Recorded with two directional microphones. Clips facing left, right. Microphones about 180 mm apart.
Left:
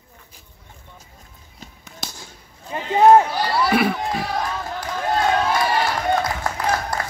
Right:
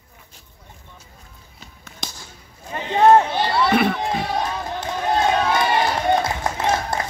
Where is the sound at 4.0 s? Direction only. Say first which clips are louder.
Right 1 dB; 25° right (ahead or behind).